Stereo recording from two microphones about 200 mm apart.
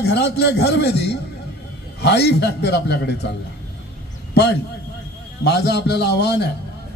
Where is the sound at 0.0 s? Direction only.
55° left (ahead or behind).